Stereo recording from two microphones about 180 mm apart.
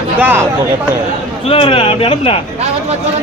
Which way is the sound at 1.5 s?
30° left (ahead or behind).